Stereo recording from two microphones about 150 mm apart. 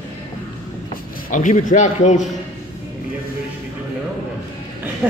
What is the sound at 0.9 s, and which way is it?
Speech, 60° left (ahead or behind).